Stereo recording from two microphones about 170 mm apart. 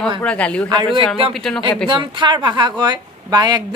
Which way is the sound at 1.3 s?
5° left (ahead or behind).